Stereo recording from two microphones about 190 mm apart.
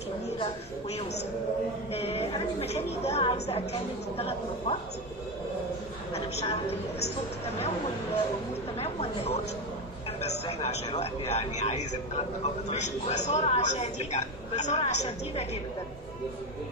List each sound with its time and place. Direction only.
2.0 s a man's voice: 35° left (ahead or behind)
6.1 s a man's voice: 30° left (ahead or behind)
8.7 s a man's voice: 35° left (ahead or behind)